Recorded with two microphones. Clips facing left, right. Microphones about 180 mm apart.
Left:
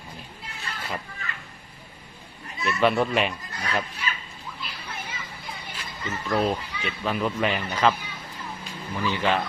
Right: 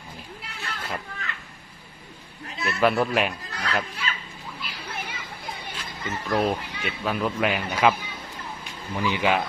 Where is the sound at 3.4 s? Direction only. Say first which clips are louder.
Right 2 dB; 70° right (ahead or behind).